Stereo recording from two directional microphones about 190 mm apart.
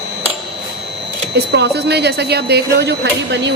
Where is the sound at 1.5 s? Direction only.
60° right (ahead or behind).